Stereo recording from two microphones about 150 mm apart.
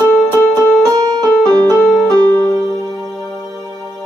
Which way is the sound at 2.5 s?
25° right (ahead or behind).